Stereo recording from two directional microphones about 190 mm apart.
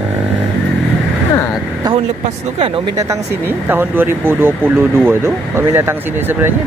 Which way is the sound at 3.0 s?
15° right (ahead or behind).